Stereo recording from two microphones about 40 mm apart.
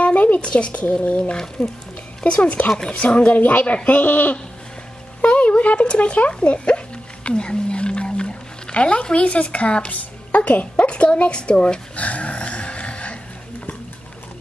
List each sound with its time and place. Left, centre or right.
0.0 s a sound: left
0.4 s speech: left
1.3 s speech: centre
2.2 s speech: left
3.3 s speech: left
3.6 s speech: left
4.0 s speech: left
5.2 s speech: left
7.2 s a sound: left
9.9 s music: left